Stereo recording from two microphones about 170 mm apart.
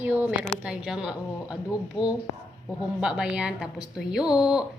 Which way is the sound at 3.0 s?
5° right (ahead or behind).